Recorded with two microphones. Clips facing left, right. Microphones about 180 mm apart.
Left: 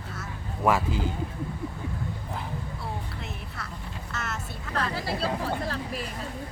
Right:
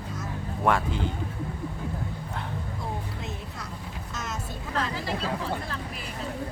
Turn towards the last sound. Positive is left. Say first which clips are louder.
# left 2 dB
turn(degrees=40)  # may be behind; listen again after turning